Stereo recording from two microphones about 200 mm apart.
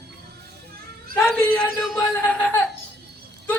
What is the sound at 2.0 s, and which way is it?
Speech, 10° left (ahead or behind).